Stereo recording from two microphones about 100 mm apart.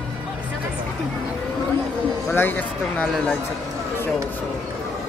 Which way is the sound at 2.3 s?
20° left (ahead or behind).